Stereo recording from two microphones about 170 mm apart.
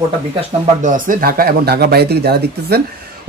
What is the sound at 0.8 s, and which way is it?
Speech, 50° right (ahead or behind).